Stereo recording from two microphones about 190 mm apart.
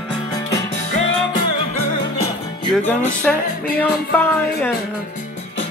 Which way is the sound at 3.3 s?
Centre (ahead or behind).